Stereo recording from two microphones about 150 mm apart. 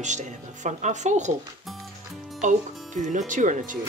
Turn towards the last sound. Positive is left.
turn(degrees=-60)  # may be behind; listen again after turning